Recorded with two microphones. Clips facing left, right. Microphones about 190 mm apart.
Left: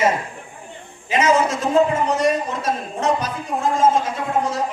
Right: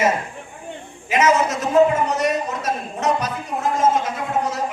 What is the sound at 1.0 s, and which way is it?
A man's voice, 30° left (ahead or behind).